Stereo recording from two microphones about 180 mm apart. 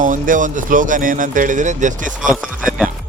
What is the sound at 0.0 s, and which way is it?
Speech, 45° right (ahead or behind).